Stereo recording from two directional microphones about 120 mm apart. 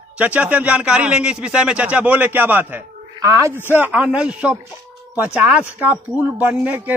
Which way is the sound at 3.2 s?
25° right (ahead or behind).